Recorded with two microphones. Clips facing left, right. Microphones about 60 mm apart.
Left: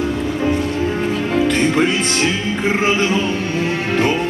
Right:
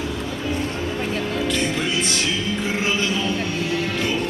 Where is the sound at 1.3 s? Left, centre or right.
Left.